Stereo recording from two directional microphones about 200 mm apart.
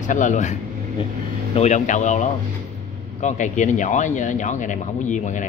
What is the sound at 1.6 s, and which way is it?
Speech, 35° left (ahead or behind).